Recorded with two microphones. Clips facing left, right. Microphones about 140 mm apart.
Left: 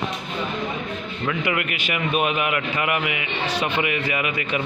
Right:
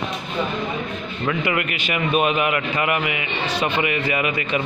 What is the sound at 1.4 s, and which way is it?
Mantra, 10° left (ahead or behind).